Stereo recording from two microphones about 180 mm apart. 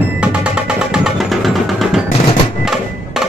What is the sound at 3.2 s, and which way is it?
Percussion, 5° right (ahead or behind).